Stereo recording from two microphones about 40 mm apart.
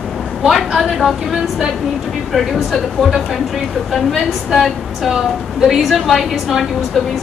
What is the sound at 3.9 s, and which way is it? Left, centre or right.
A woman's voice, centre.